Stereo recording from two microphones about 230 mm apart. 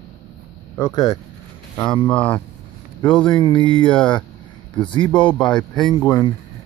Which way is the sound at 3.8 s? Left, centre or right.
Centre.